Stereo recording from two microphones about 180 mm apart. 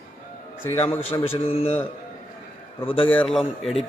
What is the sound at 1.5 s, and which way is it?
Speech, 30° left (ahead or behind).